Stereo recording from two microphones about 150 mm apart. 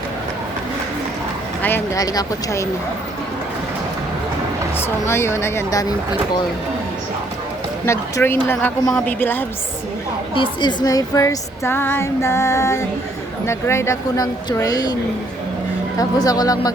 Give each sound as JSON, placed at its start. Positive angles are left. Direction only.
{"t": 2.0, "sound": "speech", "side_deg": 20}
{"t": 5.0, "sound": "speech", "side_deg": 15}
{"t": 7.9, "sound": "speech", "side_deg": 15}
{"t": 10.3, "sound": "speech", "side_deg": 30}
{"t": 16.0, "sound": "speech", "side_deg": 25}